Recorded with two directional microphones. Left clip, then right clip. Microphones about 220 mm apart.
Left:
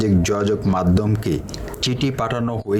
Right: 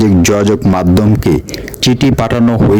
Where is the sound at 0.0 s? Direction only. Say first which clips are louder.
Right 10 dB; 55° right (ahead or behind).